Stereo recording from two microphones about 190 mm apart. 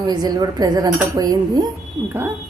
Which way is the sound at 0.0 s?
20° right (ahead or behind).